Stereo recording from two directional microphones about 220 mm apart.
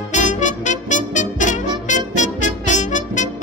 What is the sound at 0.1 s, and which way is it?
Music, 35° left (ahead or behind).